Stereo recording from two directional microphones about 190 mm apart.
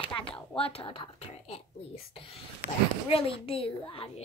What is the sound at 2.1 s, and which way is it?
A woman's voice, 30° left (ahead or behind).